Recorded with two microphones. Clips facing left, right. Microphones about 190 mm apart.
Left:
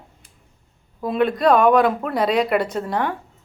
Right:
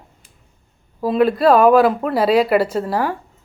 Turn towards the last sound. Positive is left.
turn(degrees=-5)  # may be behind; listen again after turning